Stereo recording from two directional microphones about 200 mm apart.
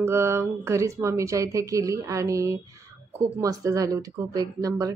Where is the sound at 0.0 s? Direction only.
15° right (ahead or behind).